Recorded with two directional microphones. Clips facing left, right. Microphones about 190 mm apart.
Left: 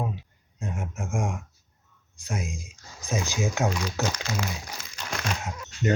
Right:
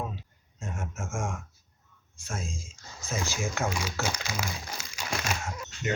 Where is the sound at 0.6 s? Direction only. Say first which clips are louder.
Left 3 dB; 15° left (ahead or behind).